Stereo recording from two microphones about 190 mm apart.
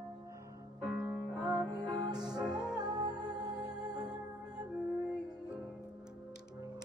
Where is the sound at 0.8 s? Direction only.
10° right (ahead or behind).